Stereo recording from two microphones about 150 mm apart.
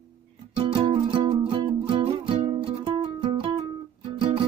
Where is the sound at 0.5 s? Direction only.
40° right (ahead or behind).